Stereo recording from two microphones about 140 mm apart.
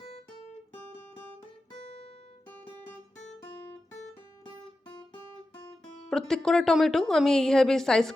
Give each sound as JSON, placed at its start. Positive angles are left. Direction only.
{"t": 1.8, "sound": "music", "side_deg": 45}
{"t": 6.1, "sound": "a woman's voice", "side_deg": 5}